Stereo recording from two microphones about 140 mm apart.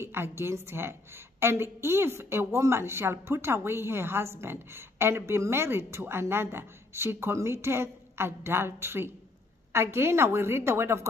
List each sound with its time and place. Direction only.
0.0 s a woman's voice: 15° right (ahead or behind)